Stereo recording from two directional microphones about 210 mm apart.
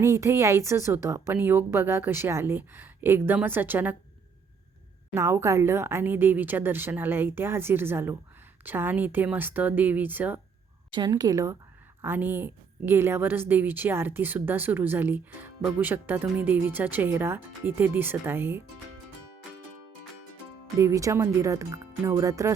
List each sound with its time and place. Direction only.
0.0 s a woman's voice: 15° right (ahead or behind)
5.1 s a woman's voice: 15° right (ahead or behind)
10.9 s a woman's voice: 20° right (ahead or behind)
20.7 s a woman's voice: 15° right (ahead or behind)